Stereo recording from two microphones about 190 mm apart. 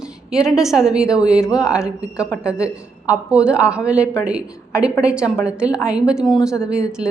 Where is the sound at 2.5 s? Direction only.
5° right (ahead or behind).